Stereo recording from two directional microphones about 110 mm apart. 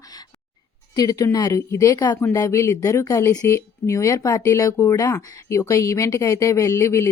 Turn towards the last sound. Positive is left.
turn(degrees=25)  # may be behind; listen again after turning